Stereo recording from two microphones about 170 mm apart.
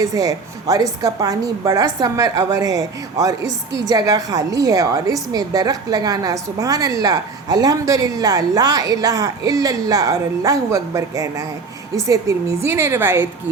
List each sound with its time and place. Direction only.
0.0 s a woman's voice: 20° right (ahead or behind)